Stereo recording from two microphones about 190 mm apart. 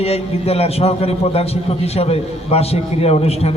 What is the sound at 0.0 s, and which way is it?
A man's voice, 30° left (ahead or behind).